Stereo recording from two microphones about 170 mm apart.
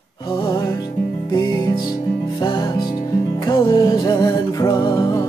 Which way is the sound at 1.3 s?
25° left (ahead or behind).